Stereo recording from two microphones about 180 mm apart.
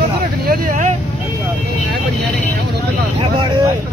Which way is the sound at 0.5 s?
45° right (ahead or behind).